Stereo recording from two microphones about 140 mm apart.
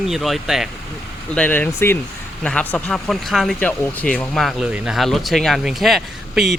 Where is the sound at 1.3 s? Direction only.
10° left (ahead or behind).